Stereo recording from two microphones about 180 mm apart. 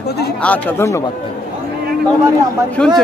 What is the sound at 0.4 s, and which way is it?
Speech, 10° left (ahead or behind).